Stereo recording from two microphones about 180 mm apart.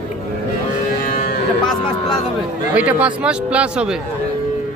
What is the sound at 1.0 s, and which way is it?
Music, 45° left (ahead or behind).